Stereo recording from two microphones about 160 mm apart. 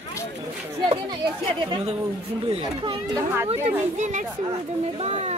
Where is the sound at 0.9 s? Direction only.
30° right (ahead or behind).